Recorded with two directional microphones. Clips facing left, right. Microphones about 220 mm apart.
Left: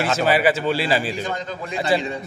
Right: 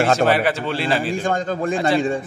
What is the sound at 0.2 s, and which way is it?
Speech, centre (ahead or behind).